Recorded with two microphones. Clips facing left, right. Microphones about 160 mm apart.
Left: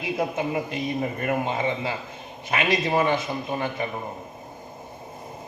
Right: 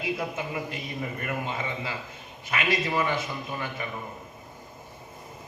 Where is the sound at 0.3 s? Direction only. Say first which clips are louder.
Left 6 dB; 25° left (ahead or behind).